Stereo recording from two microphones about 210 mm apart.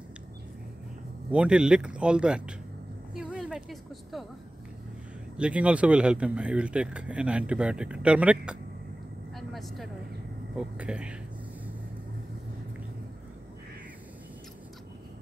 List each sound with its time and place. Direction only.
1.3 s speech: 5° right (ahead or behind)
3.2 s a sound: 5° right (ahead or behind)
5.4 s speech: 5° right (ahead or behind)
9.3 s vehicle: centre (ahead or behind)
10.5 s speech: 5° right (ahead or behind)